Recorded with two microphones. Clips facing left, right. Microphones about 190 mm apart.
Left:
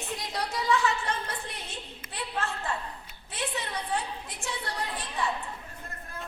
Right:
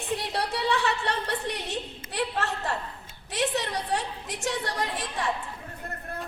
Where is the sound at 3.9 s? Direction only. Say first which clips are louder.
Right 3 dB; 90° right.